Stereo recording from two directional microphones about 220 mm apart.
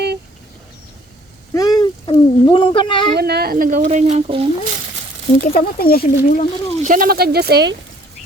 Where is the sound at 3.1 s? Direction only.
45° right (ahead or behind); by 4.6 s 25° right (ahead or behind).